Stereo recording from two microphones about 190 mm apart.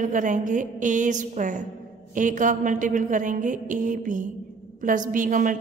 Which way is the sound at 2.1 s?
40° right (ahead or behind).